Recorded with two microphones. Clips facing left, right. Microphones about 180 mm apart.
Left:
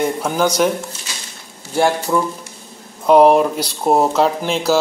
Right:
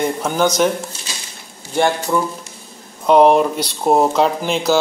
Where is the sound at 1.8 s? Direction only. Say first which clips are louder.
Left 1 dB; 5° left (ahead or behind).